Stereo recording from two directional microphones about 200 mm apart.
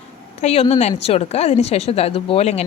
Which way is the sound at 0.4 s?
30° left (ahead or behind).